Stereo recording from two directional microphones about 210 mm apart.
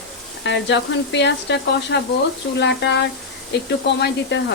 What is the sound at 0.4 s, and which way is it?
Speech, 55° left (ahead or behind).